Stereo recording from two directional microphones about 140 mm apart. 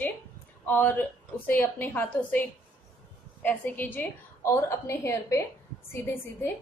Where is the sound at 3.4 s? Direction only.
10° left (ahead or behind).